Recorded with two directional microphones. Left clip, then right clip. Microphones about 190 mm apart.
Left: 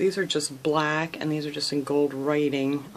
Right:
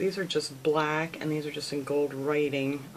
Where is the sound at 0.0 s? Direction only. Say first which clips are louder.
Left 4 dB; 45° left (ahead or behind).